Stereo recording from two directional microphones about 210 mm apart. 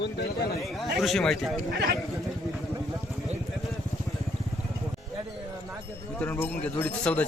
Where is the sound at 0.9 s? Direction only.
Centre (ahead or behind).